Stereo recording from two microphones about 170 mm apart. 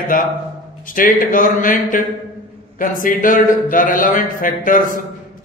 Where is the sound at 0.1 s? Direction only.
55° left (ahead or behind).